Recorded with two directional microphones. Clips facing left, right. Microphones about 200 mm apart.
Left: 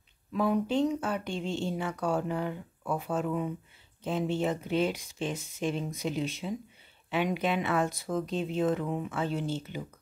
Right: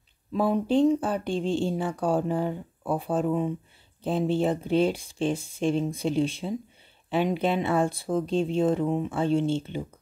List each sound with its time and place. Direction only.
0.3 s speech: 30° right (ahead or behind)